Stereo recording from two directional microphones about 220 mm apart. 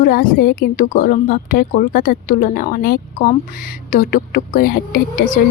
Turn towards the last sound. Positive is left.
turn(degrees=40)  # may be behind; listen again after turning